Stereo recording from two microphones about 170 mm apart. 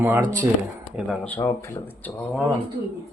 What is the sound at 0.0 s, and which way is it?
Speech, 15° right (ahead or behind).